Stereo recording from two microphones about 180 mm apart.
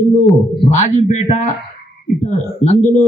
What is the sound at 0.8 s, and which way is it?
Speech, 40° left (ahead or behind).